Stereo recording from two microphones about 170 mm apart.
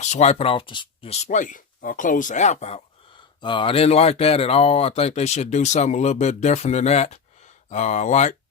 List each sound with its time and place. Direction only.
0.0 s speech: 40° left (ahead or behind)
3.4 s speech: 30° left (ahead or behind)